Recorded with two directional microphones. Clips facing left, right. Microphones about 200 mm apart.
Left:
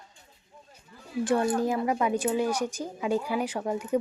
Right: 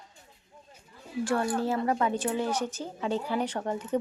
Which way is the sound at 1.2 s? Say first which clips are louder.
Left 3 dB; 20° left (ahead or behind).